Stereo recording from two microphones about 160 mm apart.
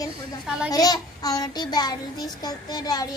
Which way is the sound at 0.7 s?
25° left (ahead or behind).